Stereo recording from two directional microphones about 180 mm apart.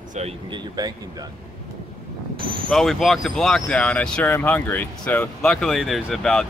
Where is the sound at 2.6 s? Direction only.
Centre (ahead or behind).